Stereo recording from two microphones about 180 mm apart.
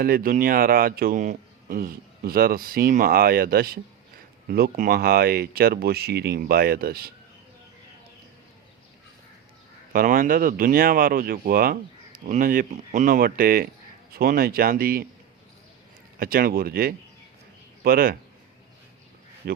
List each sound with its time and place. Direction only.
0.0 s speech: 55° right (ahead or behind)
9.9 s speech: 50° right (ahead or behind)
16.1 s speech: 55° right (ahead or behind)
19.4 s speech: 55° right (ahead or behind)